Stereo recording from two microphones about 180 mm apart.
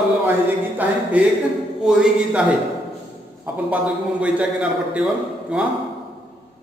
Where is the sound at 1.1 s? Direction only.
10° right (ahead or behind).